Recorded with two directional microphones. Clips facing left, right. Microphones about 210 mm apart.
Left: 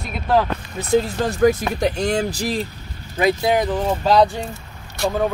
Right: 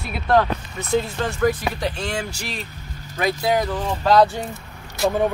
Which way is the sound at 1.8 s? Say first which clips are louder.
Left 10 dB; 40° left (ahead or behind).